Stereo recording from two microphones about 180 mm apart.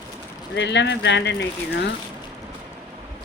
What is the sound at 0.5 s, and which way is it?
Speech, 75° left (ahead or behind).